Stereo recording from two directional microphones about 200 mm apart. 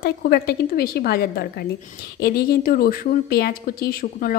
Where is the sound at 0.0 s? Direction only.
50° left (ahead or behind).